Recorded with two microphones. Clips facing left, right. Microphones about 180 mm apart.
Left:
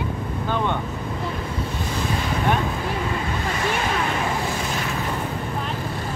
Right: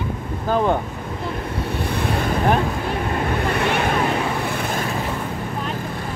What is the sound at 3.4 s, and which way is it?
Vehicle, 60° right (ahead or behind).